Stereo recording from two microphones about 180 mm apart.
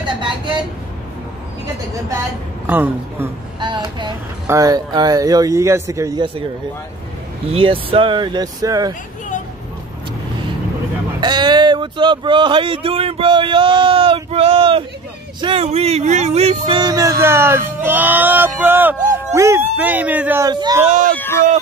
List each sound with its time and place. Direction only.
0.0 s speech: 25° right (ahead or behind)
2.6 s speech: 10° right (ahead or behind)
3.5 s speech: 25° right (ahead or behind)
7.5 s speech: 30° right (ahead or behind)
11.1 s speech: 25° right (ahead or behind)
20.4 s speech: 20° right (ahead or behind)
21.2 s speech: 15° left (ahead or behind)